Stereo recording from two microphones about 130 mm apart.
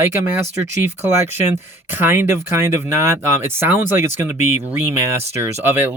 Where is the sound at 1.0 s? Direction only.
15° right (ahead or behind).